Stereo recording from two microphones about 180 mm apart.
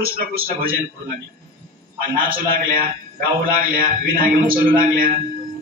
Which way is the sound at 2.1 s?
50° right (ahead or behind).